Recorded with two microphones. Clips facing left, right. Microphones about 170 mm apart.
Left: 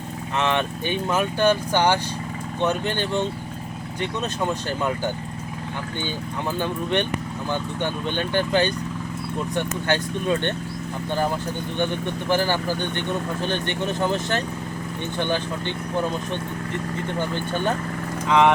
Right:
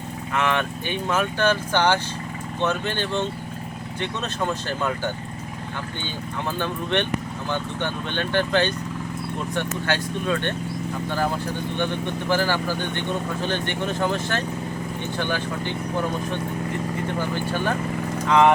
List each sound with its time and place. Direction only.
0.3 s speech: 25° left (ahead or behind)
4.4 s speech: 15° left (ahead or behind)
6.6 s speech: 15° left (ahead or behind)
12.3 s speech: 15° left (ahead or behind)
13.8 s speech: 20° left (ahead or behind)
18.3 s speech: centre (ahead or behind)